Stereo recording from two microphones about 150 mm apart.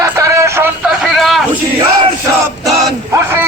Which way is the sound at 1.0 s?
Centre (ahead or behind).